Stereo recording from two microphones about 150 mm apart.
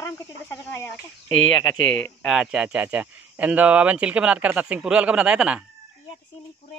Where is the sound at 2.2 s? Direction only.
5° right (ahead or behind).